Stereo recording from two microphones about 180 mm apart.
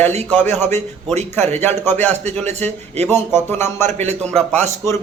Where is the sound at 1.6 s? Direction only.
10° left (ahead or behind).